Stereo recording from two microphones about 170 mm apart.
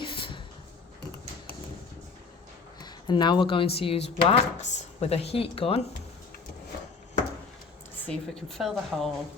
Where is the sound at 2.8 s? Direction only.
25° left (ahead or behind).